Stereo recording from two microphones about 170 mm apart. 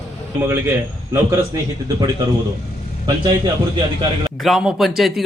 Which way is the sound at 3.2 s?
25° right (ahead or behind).